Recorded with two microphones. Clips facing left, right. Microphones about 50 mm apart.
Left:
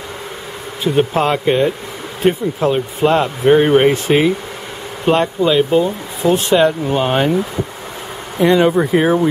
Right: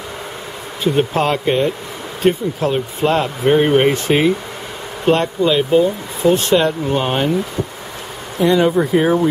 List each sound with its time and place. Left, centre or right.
0.8 s speech: centre
8.5 s speech: left
8.9 s speech: centre